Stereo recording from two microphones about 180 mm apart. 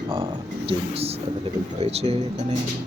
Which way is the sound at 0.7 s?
35° right (ahead or behind).